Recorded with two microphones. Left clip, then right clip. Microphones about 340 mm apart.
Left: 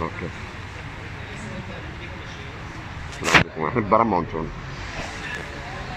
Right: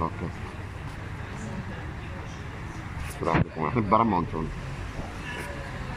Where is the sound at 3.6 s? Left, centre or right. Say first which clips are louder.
Left 4 dB; centre.